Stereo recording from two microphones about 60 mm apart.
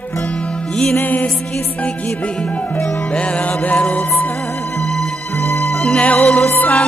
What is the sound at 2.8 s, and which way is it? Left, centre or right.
Music, centre.